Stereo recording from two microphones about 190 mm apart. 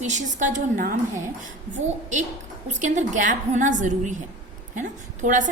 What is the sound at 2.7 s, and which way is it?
A woman's voice, 40° right (ahead or behind).